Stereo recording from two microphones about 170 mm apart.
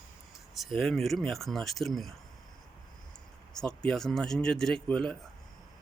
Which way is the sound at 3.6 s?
5° left (ahead or behind).